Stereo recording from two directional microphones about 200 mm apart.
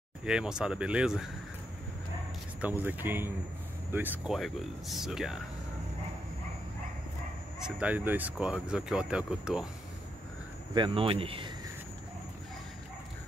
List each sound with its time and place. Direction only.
0.2 s speech: 5° right (ahead or behind)
2.6 s speech: 10° right (ahead or behind)
7.6 s speech: 5° right (ahead or behind)
10.7 s speech: 25° right (ahead or behind)